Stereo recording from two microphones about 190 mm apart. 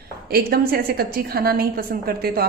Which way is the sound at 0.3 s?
55° right (ahead or behind).